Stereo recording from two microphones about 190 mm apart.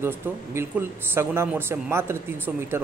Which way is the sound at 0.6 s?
15° right (ahead or behind).